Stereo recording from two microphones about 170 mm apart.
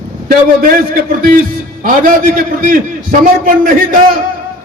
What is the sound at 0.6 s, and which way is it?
A man's voice, 55° right (ahead or behind).